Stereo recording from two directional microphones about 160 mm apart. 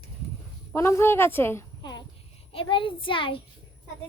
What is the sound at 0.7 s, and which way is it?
Speech, 15° left (ahead or behind).